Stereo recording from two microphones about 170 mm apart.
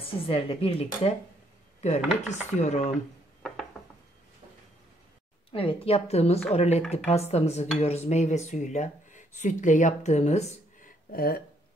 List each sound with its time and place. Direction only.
0.3 s a woman's voice: 35° left (ahead or behind)
5.5 s a woman's voice: 30° left (ahead or behind)
11.1 s a sound: 60° left (ahead or behind)